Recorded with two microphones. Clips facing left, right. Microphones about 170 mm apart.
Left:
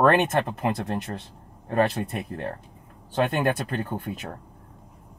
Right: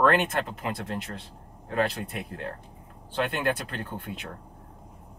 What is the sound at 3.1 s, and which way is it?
Speech, 45° left (ahead or behind).